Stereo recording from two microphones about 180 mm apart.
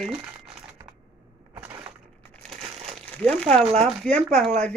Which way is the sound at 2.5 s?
35° right (ahead or behind).